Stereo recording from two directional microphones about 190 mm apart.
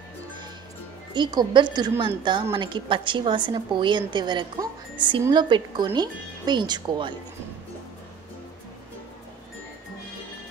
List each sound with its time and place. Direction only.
1.1 s a woman's voice: 20° right (ahead or behind)